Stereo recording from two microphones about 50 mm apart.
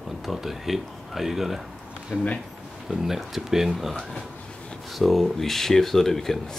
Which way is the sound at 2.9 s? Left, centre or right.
Centre.